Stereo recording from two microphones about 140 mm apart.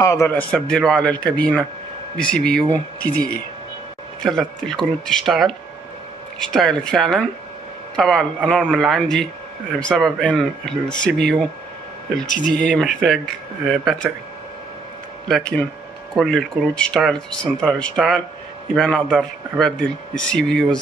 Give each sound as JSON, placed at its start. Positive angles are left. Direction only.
{"t": 0.0, "sound": "a man's voice", "side_deg": 25}
{"t": 0.3, "sound": "speech", "side_deg": 10}
{"t": 12.4, "sound": "speech", "side_deg": 5}
{"t": 15.2, "sound": "speech", "side_deg": 5}